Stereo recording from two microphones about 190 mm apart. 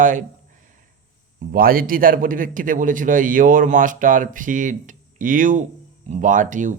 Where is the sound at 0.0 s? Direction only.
40° right (ahead or behind).